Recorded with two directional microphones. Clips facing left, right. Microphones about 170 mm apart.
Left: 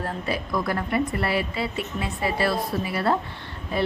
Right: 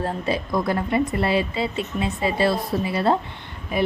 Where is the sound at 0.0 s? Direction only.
25° right (ahead or behind).